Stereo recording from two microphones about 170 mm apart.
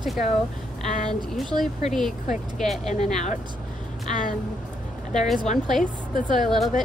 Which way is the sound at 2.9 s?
40° left (ahead or behind).